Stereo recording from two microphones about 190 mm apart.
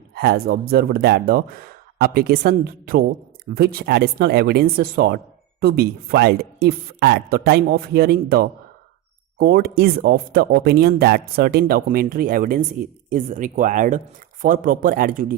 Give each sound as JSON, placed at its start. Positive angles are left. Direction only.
{"t": 0.1, "sound": "speech", "side_deg": -55}